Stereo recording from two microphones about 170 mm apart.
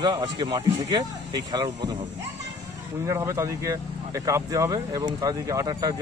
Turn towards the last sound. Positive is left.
turn(degrees=-20)  # may be behind; listen again after turning